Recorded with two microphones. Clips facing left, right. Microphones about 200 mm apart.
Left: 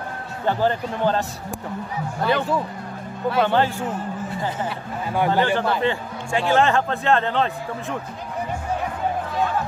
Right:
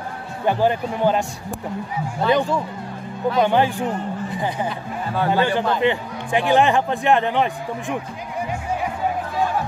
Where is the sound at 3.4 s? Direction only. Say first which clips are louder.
Right 2 dB; 15° right (ahead or behind).